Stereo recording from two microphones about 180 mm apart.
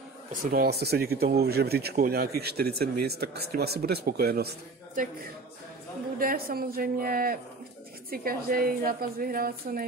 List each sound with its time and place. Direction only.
0.3 s speech: 55° right (ahead or behind)
6.1 s a woman's voice: 55° right (ahead or behind)